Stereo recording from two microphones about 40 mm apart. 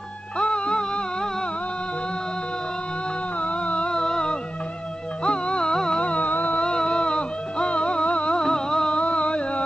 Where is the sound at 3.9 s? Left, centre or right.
Centre.